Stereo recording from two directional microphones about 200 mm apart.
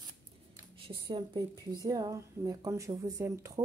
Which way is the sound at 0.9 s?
25° right (ahead or behind).